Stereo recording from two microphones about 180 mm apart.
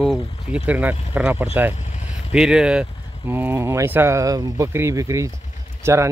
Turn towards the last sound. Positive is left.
turn(degrees=-15)  # may be behind; listen again after turning